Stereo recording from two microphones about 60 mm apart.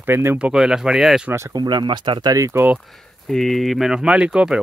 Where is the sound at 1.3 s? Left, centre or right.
Right.